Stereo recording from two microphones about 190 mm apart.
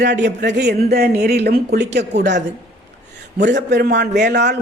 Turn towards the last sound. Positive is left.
turn(degrees=-65)  # may be behind; listen again after turning